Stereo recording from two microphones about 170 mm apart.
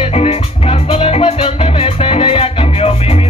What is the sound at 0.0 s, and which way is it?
Music, 35° left (ahead or behind).